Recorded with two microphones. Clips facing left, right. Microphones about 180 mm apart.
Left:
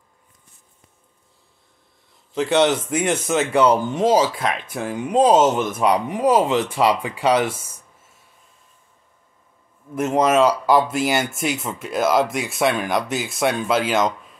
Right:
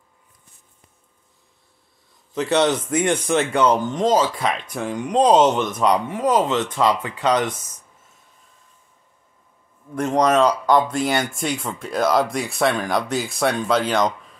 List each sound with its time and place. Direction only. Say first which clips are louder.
2.3 s a man's voice: left 1 dB; 25° left (ahead or behind)
3.3 s speech: left 3 dB; 5° left (ahead or behind)
9.9 s speech: even; 5° left (ahead or behind)